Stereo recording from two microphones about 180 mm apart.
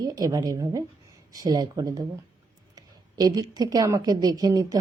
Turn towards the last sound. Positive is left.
turn(degrees=-20)  # may be behind; listen again after turning